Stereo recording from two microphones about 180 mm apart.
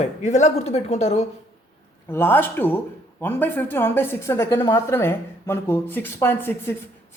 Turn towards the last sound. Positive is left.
turn(degrees=10)  # may be behind; listen again after turning